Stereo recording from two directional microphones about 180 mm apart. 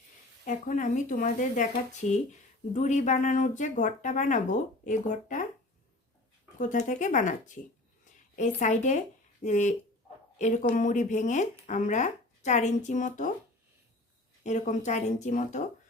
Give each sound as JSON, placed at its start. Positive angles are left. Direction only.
{"t": 0.4, "sound": "speech", "side_deg": 45}
{"t": 6.6, "sound": "speech", "side_deg": 45}
{"t": 14.4, "sound": "speech", "side_deg": 40}